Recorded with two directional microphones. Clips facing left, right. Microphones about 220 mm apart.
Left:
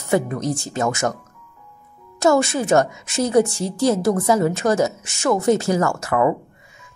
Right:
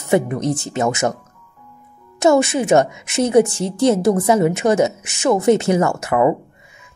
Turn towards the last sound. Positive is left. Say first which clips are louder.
# right 3 dB
turn(degrees=-20)  # may be behind; listen again after turning